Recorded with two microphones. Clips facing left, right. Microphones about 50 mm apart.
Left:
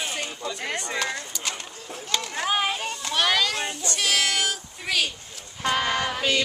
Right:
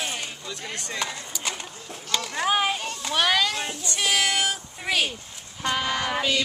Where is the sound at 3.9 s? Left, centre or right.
Centre.